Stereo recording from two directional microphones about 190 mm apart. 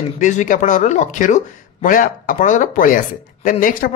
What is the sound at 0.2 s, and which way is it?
Speech, 40° left (ahead or behind).